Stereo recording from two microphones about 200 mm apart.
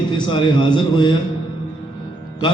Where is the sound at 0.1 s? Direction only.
25° left (ahead or behind).